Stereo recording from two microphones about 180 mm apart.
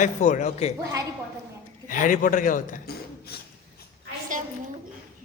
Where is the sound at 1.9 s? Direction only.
45° left (ahead or behind).